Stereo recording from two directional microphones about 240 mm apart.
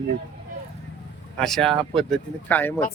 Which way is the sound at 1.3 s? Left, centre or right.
Centre.